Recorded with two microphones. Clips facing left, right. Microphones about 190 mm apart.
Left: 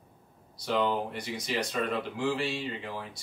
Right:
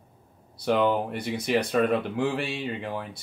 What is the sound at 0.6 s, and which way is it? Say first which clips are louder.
Speech: right 5 dB; 60° right (ahead or behind).